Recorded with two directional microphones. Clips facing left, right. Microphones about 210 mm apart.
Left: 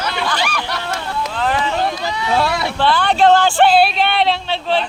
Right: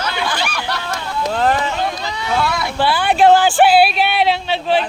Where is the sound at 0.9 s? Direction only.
40° right (ahead or behind).